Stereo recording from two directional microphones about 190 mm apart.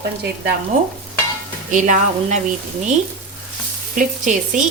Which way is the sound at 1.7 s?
40° right (ahead or behind).